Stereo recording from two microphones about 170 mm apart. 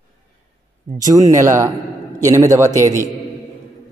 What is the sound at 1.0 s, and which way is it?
A man's voice, 20° right (ahead or behind).